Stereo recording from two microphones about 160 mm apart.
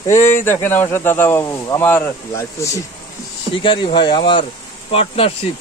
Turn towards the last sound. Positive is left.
turn(degrees=35)  # may be behind; listen again after turning